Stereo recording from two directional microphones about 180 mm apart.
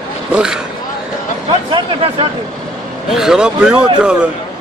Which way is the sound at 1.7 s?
30° right (ahead or behind).